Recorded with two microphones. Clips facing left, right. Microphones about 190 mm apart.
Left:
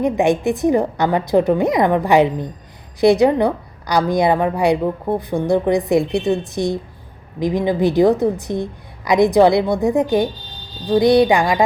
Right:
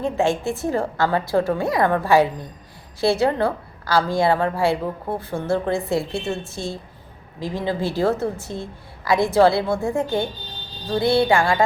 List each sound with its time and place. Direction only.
0.0 s a woman's voice: 15° left (ahead or behind)